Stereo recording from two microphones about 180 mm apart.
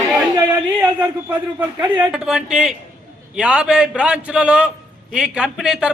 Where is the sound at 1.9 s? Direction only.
5° right (ahead or behind).